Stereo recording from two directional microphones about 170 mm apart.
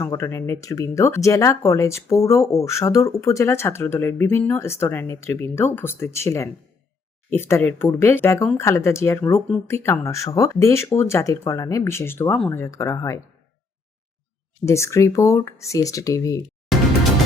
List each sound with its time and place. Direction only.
0.0 s speech: 15° left (ahead or behind)
14.6 s speech: 15° left (ahead or behind)